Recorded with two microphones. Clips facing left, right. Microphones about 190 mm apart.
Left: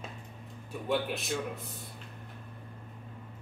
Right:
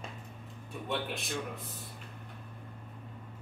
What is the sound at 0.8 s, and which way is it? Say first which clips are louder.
Speech: left 5 dB; centre (ahead or behind).